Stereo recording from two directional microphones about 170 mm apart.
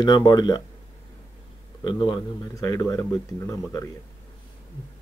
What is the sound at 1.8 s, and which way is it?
Speech, 25° left (ahead or behind).